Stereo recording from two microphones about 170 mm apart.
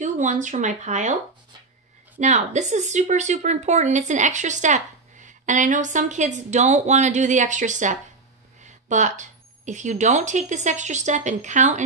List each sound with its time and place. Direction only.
0.0 s speech: 45° right (ahead or behind)
2.1 s speech: 45° right (ahead or behind)